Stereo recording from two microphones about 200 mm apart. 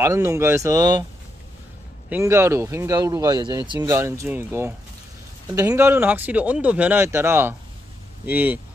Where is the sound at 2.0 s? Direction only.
10° right (ahead or behind).